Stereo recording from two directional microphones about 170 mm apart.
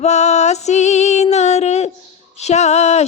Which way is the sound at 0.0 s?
40° left (ahead or behind).